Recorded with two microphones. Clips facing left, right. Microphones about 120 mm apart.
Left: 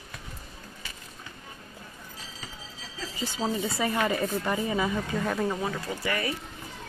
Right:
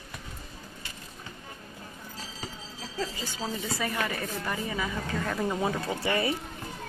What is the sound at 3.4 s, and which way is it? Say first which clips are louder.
A woman's voice: left 4 dB; 30° left (ahead or behind).